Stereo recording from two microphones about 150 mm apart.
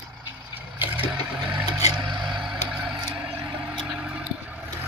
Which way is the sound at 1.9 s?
30° right (ahead or behind).